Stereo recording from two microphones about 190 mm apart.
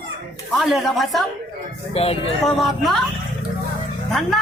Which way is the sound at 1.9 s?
30° left (ahead or behind).